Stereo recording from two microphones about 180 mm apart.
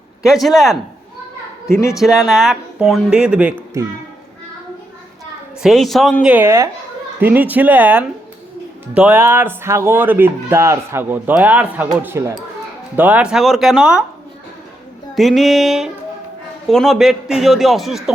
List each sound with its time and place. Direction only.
0.2 s speech: centre (ahead or behind)
1.7 s speech: 15° left (ahead or behind)
2.0 s speech: centre (ahead or behind)
5.6 s speech: centre (ahead or behind)
6.3 s a man's voice: 15° right (ahead or behind)
15.1 s speech: centre (ahead or behind)